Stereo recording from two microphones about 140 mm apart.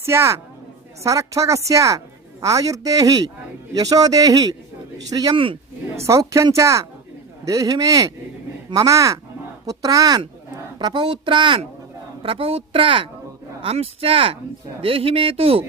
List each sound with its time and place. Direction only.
0.0 s speech: 20° right (ahead or behind)
5.3 s speech: 40° right (ahead or behind)
6.0 s speech: 20° right (ahead or behind); by 15.6 s 40° right (ahead or behind)